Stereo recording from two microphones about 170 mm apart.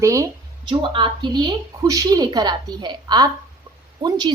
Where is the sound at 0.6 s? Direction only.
30° right (ahead or behind).